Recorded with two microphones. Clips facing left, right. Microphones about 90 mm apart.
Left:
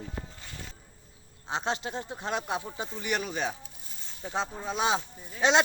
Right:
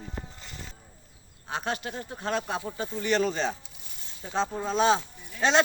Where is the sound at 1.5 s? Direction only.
20° left (ahead or behind).